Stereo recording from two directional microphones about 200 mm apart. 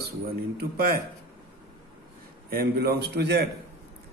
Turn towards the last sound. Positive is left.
turn(degrees=-55)  # may be behind; listen again after turning